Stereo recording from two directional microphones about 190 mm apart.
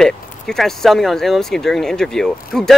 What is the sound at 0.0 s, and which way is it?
Speech, centre (ahead or behind).